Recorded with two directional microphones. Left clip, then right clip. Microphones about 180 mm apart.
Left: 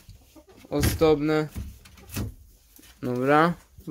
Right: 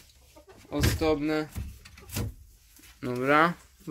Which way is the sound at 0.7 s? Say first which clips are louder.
Left 5 dB; 45° left (ahead or behind).